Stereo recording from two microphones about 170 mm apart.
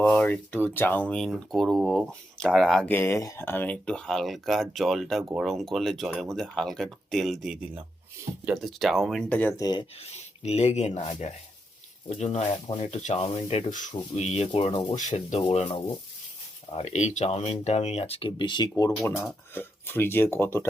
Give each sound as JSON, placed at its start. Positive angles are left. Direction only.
{"t": 0.0, "sound": "speech", "side_deg": 10}
{"t": 10.0, "sound": "speech", "side_deg": 40}
{"t": 14.9, "sound": "speech", "side_deg": 45}